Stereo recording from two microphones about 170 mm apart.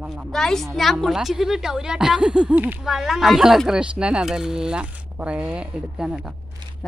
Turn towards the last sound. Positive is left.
turn(degrees=-5)  # may be behind; listen again after turning